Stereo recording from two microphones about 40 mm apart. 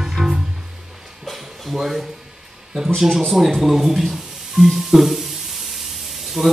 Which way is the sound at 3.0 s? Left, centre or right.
Centre.